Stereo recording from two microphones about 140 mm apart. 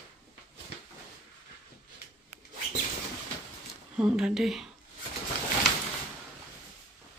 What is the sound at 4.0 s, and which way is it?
Speech, 5° right (ahead or behind).